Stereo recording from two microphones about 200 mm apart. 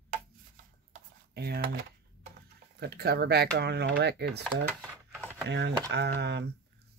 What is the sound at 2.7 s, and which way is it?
Speech, 55° right (ahead or behind).